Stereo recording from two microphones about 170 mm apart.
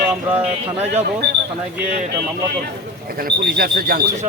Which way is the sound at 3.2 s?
65° right (ahead or behind).